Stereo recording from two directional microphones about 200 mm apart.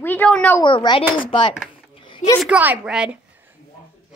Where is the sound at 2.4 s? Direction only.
5° right (ahead or behind).